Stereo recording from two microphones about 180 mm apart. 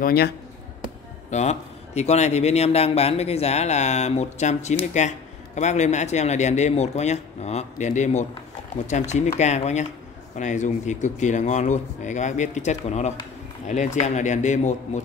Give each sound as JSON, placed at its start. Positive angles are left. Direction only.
{"t": 0.0, "sound": "speech", "side_deg": 60}
{"t": 1.3, "sound": "speech", "side_deg": 40}